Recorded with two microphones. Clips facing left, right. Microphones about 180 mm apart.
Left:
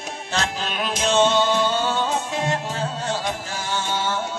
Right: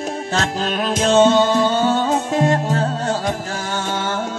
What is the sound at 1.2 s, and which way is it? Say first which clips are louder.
Music: right 5 dB; 50° right (ahead or behind).